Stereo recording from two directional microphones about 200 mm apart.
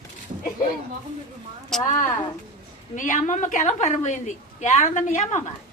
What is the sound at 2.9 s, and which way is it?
A woman's voice, 40° left (ahead or behind).